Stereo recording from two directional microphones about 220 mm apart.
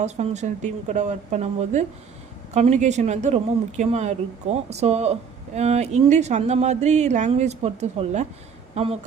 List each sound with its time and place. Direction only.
0.0 s speech: 30° right (ahead or behind)